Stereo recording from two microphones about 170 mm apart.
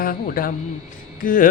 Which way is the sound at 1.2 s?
50° left (ahead or behind).